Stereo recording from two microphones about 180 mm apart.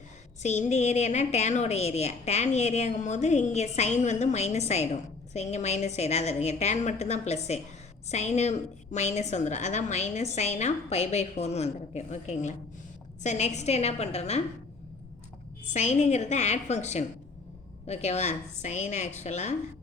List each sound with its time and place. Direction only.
0.4 s a woman's voice: 40° left (ahead or behind)
15.7 s a woman's voice: 40° left (ahead or behind)